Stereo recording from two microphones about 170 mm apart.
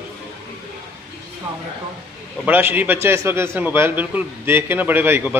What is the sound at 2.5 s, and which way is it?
A man's voice, 10° right (ahead or behind).